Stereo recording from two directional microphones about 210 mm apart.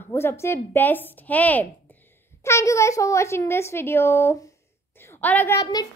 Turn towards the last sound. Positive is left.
turn(degrees=15)  # may be behind; listen again after turning